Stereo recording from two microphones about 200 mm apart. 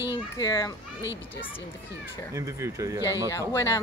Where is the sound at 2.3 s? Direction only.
15° right (ahead or behind).